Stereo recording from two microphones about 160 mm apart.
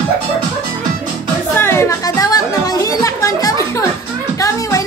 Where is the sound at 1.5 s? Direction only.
15° left (ahead or behind).